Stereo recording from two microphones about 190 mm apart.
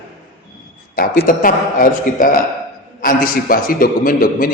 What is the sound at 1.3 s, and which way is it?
A man's voice, 45° left (ahead or behind).